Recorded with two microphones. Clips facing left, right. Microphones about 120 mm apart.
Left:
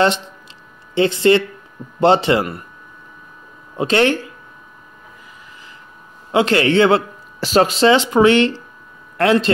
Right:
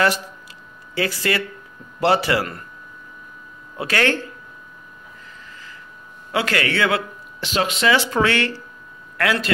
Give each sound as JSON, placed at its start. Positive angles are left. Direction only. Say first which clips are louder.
{"t": 0.9, "sound": "speech", "louder": "left 9 dB", "side_deg": 25}
{"t": 3.7, "sound": "speech", "louder": "left 5 dB", "side_deg": 25}
{"t": 6.3, "sound": "speech", "louder": "left 8 dB", "side_deg": 25}
{"t": 7.9, "sound": "speech", "louder": "left 5 dB", "side_deg": 20}